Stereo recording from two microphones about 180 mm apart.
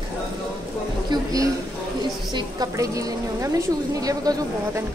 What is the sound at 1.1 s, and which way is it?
A woman's voice, 20° right (ahead or behind).